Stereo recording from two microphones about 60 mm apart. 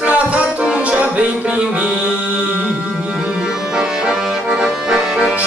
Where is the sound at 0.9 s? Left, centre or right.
Right.